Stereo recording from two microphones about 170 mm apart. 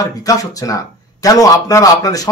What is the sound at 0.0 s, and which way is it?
A man's voice, 20° left (ahead or behind).